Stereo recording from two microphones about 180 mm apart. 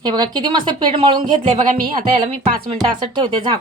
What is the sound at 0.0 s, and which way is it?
Speech, 25° right (ahead or behind).